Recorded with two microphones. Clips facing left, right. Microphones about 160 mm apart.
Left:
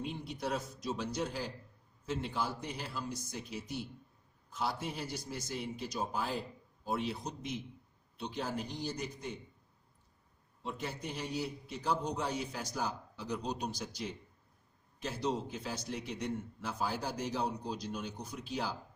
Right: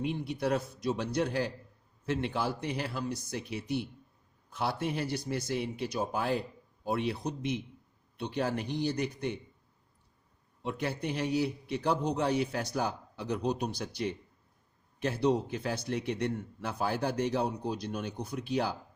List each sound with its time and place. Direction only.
0.0 s a man's voice: 65° right (ahead or behind)
10.6 s a man's voice: 65° right (ahead or behind)